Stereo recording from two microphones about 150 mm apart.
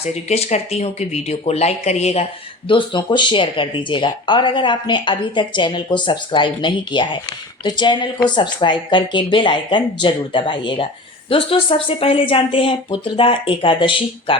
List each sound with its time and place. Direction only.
0.0 s speech: 45° left (ahead or behind)
2.6 s speech: 35° left (ahead or behind)